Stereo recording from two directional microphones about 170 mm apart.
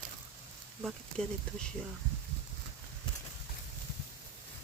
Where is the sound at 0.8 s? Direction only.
Centre (ahead or behind).